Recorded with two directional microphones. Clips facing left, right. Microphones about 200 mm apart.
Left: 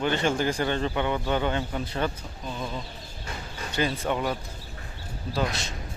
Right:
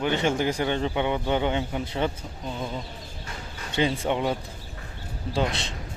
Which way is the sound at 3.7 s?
20° right (ahead or behind).